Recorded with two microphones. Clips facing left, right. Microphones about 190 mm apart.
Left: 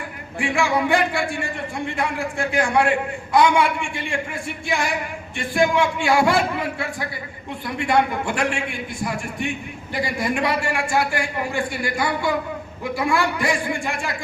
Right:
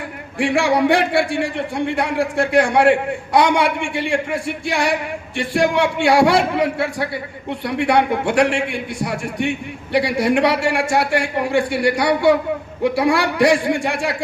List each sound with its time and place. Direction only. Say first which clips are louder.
0.3 s a man's voice: right 5 dB; 70° right (ahead or behind)